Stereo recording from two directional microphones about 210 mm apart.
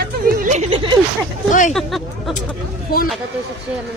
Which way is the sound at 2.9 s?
45° left (ahead or behind).